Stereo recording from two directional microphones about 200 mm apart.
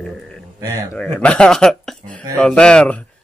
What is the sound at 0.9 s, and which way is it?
Speech, 5° left (ahead or behind).